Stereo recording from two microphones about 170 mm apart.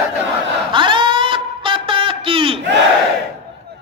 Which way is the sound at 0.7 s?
30° right (ahead or behind).